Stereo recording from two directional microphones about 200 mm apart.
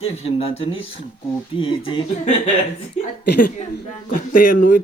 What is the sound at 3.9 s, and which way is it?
Speech, 40° left (ahead or behind).